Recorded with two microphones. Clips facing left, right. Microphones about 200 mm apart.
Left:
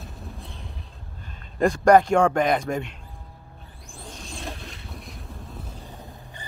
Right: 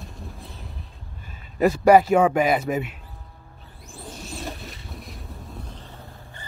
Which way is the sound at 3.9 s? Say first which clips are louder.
Right 3 dB; 5° right (ahead or behind).